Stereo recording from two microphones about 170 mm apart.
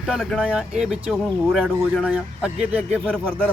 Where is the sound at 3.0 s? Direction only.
5° left (ahead or behind).